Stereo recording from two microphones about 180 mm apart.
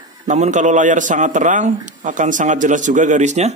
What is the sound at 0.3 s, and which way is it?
Speech, 40° right (ahead or behind).